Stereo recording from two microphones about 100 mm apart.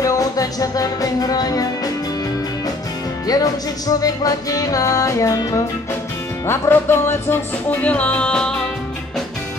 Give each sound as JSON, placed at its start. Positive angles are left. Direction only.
{"t": 0.0, "sound": "music", "side_deg": 35}
{"t": 3.3, "sound": "music", "side_deg": 40}
{"t": 6.4, "sound": "music", "side_deg": 25}